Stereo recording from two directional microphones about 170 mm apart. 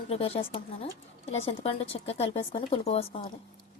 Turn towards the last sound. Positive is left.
turn(degrees=35)  # may be behind; listen again after turning